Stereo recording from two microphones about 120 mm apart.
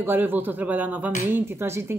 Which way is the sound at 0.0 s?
15° right (ahead or behind).